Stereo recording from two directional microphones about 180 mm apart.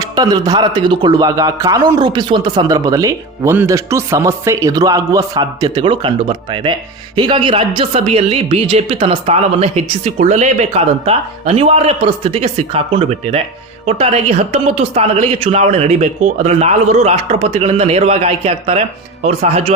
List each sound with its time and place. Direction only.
0.0 s a man's voice: 20° right (ahead or behind)